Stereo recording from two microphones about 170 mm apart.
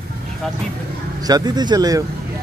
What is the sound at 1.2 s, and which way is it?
Speech, 25° right (ahead or behind).